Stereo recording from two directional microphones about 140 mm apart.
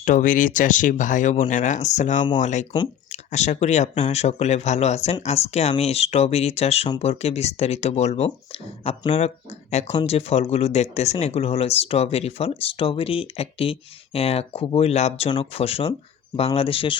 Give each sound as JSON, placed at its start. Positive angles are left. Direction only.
{"t": 0.0, "sound": "speech", "side_deg": 70}